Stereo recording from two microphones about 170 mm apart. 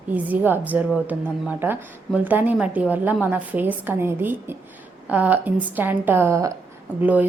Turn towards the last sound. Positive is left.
turn(degrees=-10)  # may be behind; listen again after turning